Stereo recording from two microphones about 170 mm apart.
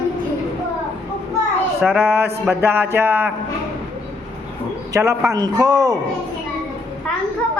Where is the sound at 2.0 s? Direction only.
15° right (ahead or behind).